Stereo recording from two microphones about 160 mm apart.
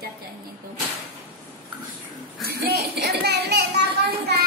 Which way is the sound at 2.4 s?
90° right.